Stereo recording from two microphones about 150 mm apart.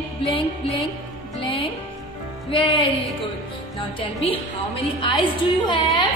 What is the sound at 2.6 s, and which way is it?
Music, 35° left (ahead or behind).